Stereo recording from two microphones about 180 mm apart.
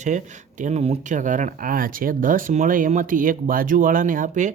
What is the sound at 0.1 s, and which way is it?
Speech, 45° right (ahead or behind).